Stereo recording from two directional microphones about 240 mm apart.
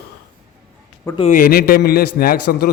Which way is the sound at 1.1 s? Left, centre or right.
Left.